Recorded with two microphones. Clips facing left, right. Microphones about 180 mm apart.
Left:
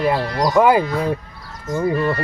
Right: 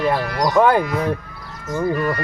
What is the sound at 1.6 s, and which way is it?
Speech, 30° left (ahead or behind).